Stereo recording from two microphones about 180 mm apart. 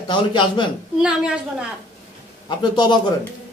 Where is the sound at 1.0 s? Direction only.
5° right (ahead or behind).